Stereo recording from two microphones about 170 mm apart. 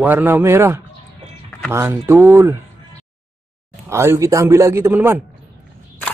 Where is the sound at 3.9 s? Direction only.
15° right (ahead or behind).